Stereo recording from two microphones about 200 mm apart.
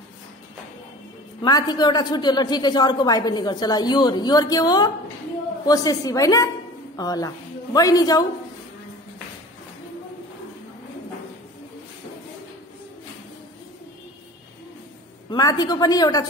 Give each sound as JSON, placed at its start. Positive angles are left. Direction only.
{"t": 1.4, "sound": "a woman's voice", "side_deg": 20}
{"t": 15.2, "sound": "a woman's voice", "side_deg": 20}